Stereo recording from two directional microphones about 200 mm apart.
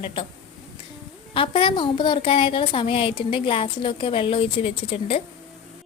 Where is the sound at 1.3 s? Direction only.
25° left (ahead or behind).